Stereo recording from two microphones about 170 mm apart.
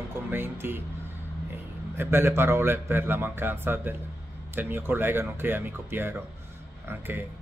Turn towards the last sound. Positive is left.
turn(degrees=-10)  # may be behind; listen again after turning